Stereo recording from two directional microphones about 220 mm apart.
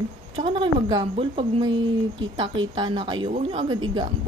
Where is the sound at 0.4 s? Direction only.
20° right (ahead or behind).